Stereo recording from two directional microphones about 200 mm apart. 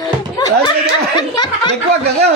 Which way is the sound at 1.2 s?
20° left (ahead or behind).